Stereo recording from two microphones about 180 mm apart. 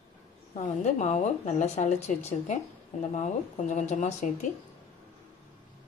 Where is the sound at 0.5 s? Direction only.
40° left (ahead or behind).